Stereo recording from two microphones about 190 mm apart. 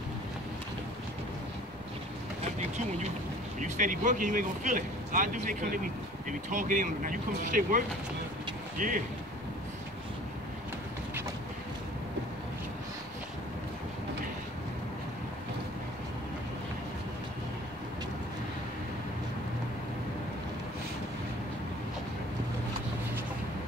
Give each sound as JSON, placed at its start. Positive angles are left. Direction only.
{"t": 3.6, "sound": "speech", "side_deg": -40}